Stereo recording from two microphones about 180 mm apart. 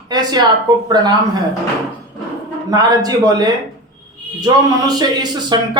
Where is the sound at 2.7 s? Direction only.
20° right (ahead or behind).